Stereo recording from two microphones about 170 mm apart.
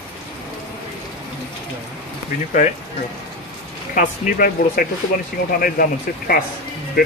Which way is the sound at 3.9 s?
55° left (ahead or behind).